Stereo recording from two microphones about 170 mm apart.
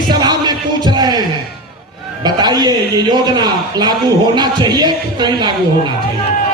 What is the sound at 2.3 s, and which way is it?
A man's voice, 25° right (ahead or behind).